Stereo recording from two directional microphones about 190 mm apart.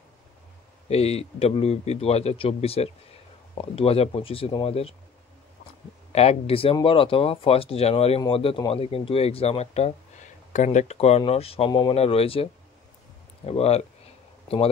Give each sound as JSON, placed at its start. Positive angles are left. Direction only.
{"t": 0.8, "sound": "speech", "side_deg": 35}
{"t": 6.1, "sound": "speech", "side_deg": 30}
{"t": 13.5, "sound": "speech", "side_deg": 35}